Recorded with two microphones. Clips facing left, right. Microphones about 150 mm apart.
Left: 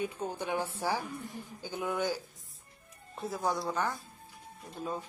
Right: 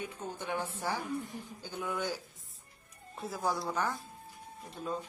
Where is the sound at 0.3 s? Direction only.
10° left (ahead or behind).